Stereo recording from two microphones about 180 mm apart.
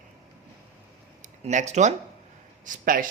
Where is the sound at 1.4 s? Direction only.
40° right (ahead or behind).